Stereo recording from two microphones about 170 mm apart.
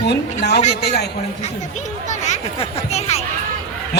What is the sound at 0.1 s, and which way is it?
Speech, 80° left.